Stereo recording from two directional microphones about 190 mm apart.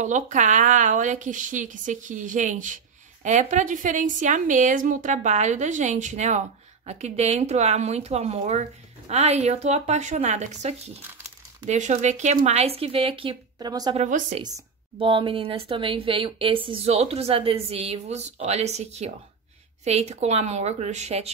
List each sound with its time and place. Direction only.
0.0 s a woman's voice: 40° right (ahead or behind); by 13.9 s 20° right (ahead or behind)
13.9 s a woman's voice: 35° right (ahead or behind)
15.0 s a woman's voice: 25° right (ahead or behind)